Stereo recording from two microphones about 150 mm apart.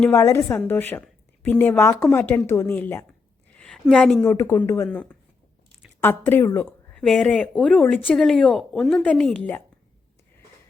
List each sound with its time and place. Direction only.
0.0 s speech: 15° left (ahead or behind)
3.5 s a sound: 5° left (ahead or behind)
4.4 s speech: 15° left (ahead or behind)
6.9 s speech: 5° left (ahead or behind)